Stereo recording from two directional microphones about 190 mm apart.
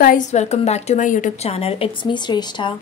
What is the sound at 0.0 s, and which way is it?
A woman's voice, 40° left (ahead or behind).